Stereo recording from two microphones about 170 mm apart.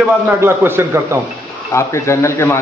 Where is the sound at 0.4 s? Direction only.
15° right (ahead or behind).